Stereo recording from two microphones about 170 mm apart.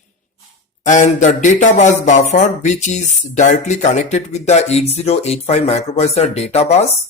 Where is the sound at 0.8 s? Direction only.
45° left (ahead or behind).